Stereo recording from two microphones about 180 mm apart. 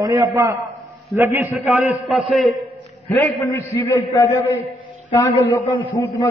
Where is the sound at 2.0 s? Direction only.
Centre (ahead or behind).